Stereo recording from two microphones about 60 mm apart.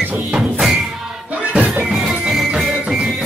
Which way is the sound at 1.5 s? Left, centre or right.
Right.